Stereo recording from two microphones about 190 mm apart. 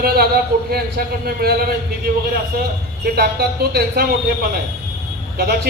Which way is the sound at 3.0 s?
55° right (ahead or behind).